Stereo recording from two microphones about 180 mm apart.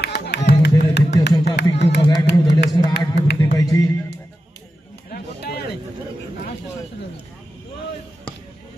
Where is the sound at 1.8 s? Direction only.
70° left (ahead or behind).